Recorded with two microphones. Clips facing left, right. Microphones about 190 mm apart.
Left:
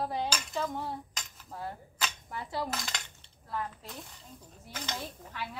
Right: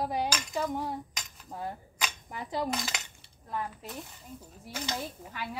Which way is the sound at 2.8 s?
5° right (ahead or behind).